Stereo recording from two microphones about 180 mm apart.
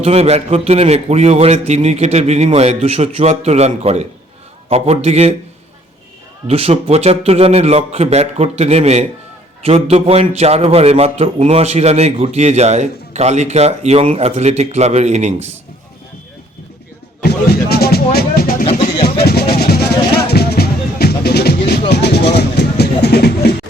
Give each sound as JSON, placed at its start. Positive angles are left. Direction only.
{"t": 0.0, "sound": "a man's voice", "side_deg": -35}
{"t": 6.5, "sound": "a man's voice", "side_deg": -35}
{"t": 17.2, "sound": "speech", "side_deg": 60}
{"t": 19.0, "sound": "music", "side_deg": 60}
{"t": 21.7, "sound": "a sound", "side_deg": 65}